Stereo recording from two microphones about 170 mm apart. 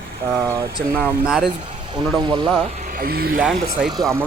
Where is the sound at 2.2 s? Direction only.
30° right (ahead or behind).